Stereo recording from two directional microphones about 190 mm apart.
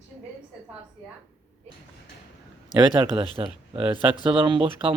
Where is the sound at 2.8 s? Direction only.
25° right (ahead or behind).